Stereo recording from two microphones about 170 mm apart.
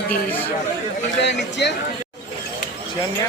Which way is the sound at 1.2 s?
90° left.